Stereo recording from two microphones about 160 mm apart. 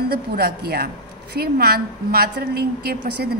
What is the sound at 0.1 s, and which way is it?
A woman's voice, 80° right.